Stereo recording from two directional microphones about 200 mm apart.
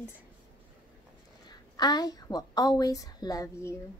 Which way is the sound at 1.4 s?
20° left (ahead or behind).